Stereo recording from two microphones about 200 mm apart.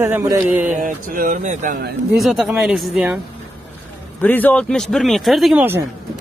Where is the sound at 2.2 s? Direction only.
Centre (ahead or behind).